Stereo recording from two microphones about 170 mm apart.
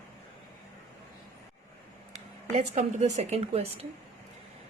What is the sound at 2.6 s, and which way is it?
Speech, 40° right (ahead or behind).